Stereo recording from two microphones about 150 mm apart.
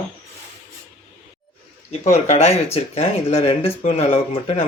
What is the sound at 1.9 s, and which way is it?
Speech, 45° left (ahead or behind).